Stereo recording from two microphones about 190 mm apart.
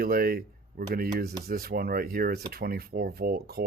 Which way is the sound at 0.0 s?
50° right (ahead or behind).